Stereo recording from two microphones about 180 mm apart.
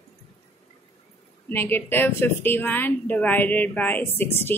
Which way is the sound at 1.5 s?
10° left (ahead or behind).